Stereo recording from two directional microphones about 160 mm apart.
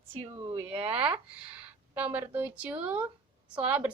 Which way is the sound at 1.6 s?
10° right (ahead or behind).